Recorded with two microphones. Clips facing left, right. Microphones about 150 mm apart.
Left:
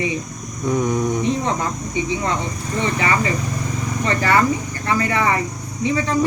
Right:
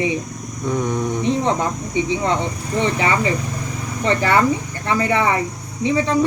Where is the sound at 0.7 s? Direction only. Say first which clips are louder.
Left 2 dB; 10° left (ahead or behind).